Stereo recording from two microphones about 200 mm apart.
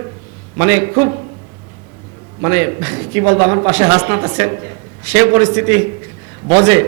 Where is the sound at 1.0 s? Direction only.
30° right (ahead or behind).